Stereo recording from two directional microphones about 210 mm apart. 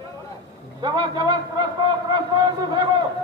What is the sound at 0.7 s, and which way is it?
A man's voice, 20° right (ahead or behind).